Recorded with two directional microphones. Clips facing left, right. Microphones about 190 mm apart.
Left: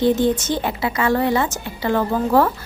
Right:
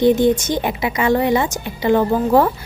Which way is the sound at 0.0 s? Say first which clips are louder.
Right 3 dB; 15° right (ahead or behind).